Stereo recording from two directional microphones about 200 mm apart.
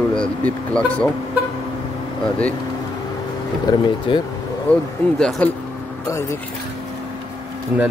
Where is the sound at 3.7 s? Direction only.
20° left (ahead or behind).